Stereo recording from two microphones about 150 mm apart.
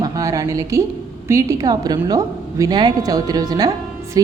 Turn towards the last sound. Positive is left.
turn(degrees=-25)  # may be behind; listen again after turning